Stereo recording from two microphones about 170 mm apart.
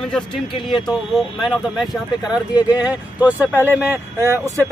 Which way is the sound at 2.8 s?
10° right (ahead or behind).